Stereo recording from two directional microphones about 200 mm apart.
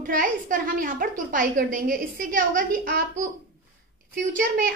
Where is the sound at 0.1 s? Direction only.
40° right (ahead or behind).